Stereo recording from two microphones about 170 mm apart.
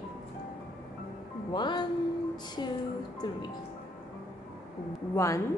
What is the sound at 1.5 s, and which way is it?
Music, 25° left (ahead or behind).